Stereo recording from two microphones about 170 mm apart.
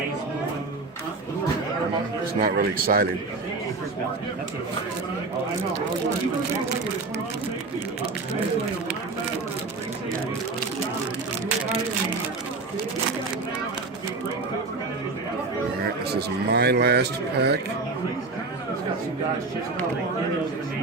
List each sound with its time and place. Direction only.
2.4 s a man's voice: 60° right (ahead or behind)
16.1 s speech: 70° right (ahead or behind)